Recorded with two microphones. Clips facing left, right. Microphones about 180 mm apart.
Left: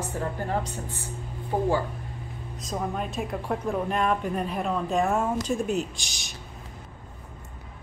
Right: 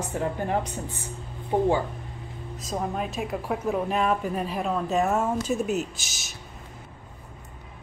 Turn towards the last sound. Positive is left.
turn(degrees=-5)  # may be behind; listen again after turning